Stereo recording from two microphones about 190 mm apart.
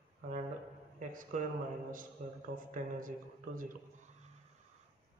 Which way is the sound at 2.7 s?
45° right (ahead or behind).